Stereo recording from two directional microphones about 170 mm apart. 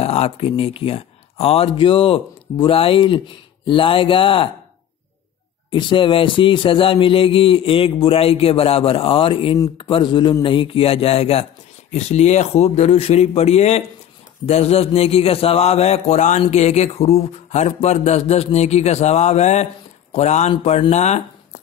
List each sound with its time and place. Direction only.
0.0 s speech: 35° left (ahead or behind)
5.7 s mantra: 30° left (ahead or behind)